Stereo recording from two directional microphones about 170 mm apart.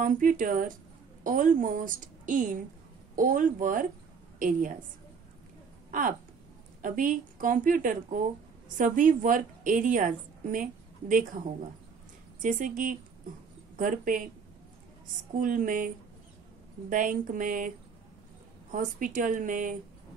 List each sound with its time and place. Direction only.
0.0 s a woman's voice: 50° right (ahead or behind)
5.9 s a sound: 55° right (ahead or behind)
6.8 s a woman's voice: 50° right (ahead or behind)
12.4 s a woman's voice: 50° right (ahead or behind)
15.3 s a woman's voice: 50° right (ahead or behind)
16.9 s a woman's voice: 50° right (ahead or behind)